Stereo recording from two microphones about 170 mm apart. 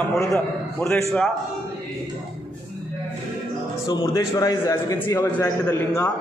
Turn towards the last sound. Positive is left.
turn(degrees=15)  # may be behind; listen again after turning